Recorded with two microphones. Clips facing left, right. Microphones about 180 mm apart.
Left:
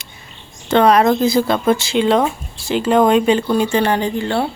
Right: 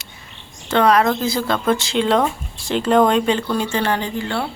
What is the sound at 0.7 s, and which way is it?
Speech, 20° left (ahead or behind).